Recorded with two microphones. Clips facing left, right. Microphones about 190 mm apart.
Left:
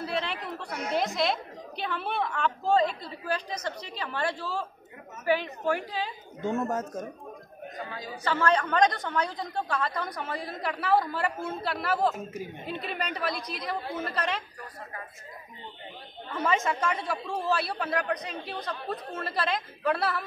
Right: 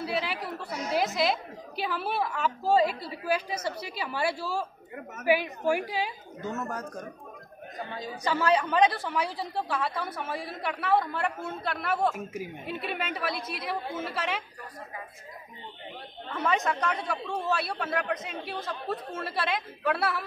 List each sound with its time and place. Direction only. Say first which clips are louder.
0.0 s a woman's voice: right 1 dB; 5° right (ahead or behind)
6.4 s speech: left 5 dB; 25° left (ahead or behind)
8.2 s a woman's voice: even; 10° right (ahead or behind)
16.3 s a woman's voice: even; centre (ahead or behind)